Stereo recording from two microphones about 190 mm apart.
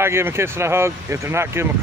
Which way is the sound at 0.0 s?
15° right (ahead or behind).